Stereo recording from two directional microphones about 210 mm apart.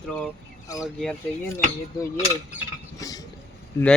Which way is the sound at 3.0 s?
15° left (ahead or behind).